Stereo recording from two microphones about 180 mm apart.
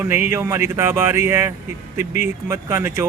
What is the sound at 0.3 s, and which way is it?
Speech, 15° right (ahead or behind).